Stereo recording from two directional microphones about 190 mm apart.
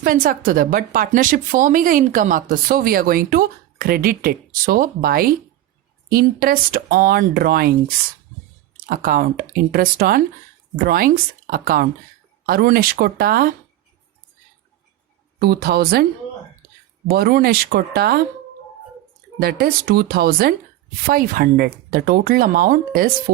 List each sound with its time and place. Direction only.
0.0 s speech: 50° right (ahead or behind)
15.4 s a woman's voice: 55° right (ahead or behind)
17.1 s speech: 55° right (ahead or behind)
19.4 s a woman's voice: 55° right (ahead or behind)